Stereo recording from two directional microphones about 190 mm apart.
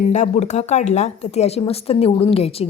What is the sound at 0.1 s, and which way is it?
Speech, 35° left (ahead or behind).